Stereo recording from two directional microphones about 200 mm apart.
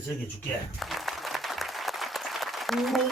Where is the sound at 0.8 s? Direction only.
Centre (ahead or behind).